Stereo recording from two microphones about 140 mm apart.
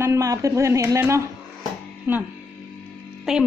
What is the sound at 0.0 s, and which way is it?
A woman's voice, 20° right (ahead or behind).